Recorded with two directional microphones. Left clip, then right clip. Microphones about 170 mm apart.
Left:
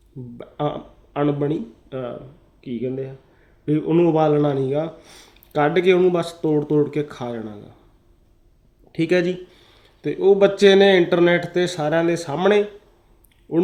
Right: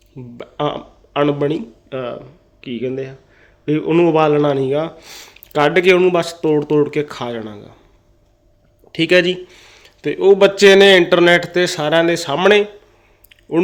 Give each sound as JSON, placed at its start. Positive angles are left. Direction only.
{"t": 0.3, "sound": "speech", "side_deg": 15}
{"t": 8.9, "sound": "speech", "side_deg": 15}